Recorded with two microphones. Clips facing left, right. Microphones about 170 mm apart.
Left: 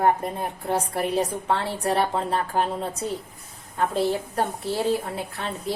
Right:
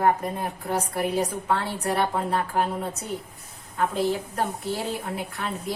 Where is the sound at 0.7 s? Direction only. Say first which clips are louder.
Left 2 dB; 30° left (ahead or behind).